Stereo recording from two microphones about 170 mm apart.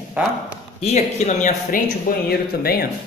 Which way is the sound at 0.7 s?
40° left (ahead or behind).